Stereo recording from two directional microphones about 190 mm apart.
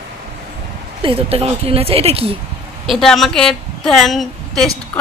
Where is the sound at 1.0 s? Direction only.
30° right (ahead or behind).